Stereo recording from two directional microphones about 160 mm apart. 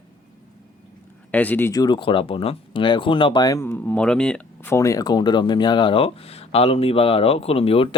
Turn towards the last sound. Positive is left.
turn(degrees=35)  # may be behind; listen again after turning